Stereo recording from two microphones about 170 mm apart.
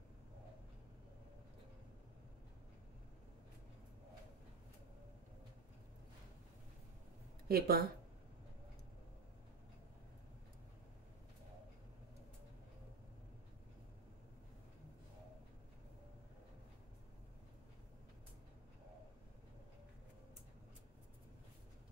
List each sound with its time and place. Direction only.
7.4 s speech: 65° right (ahead or behind)